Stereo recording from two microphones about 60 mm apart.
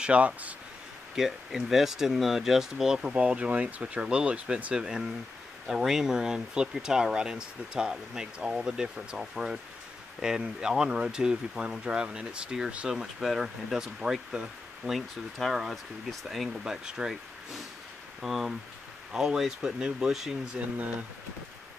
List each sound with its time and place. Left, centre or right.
0.0 s speech: right
1.1 s speech: centre
13.0 s speech: centre
18.2 s speech: centre
20.4 s speech: right